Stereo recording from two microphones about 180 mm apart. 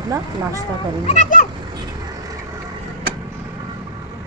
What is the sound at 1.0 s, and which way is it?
Speech, 45° left (ahead or behind).